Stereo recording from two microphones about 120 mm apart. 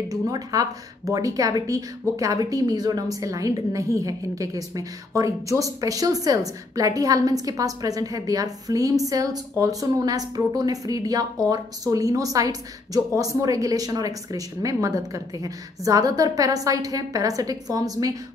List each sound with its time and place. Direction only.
0.1 s speech: 30° right (ahead or behind)